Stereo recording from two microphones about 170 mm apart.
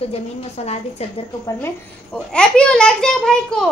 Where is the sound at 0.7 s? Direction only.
40° left (ahead or behind).